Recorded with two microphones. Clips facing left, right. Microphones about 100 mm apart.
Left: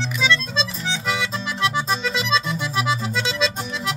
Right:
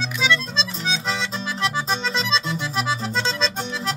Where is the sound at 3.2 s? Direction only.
35° right (ahead or behind).